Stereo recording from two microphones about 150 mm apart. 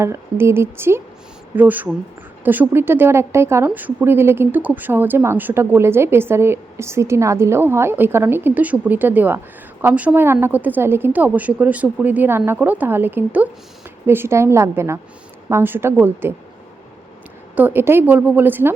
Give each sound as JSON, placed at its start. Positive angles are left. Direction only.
{"t": 0.0, "sound": "a woman's voice", "side_deg": -20}
{"t": 17.5, "sound": "a woman's voice", "side_deg": -10}